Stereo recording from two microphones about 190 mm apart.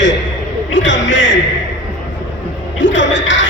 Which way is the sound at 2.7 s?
75° left (ahead or behind).